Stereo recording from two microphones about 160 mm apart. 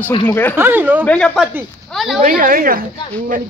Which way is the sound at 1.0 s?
5° left (ahead or behind).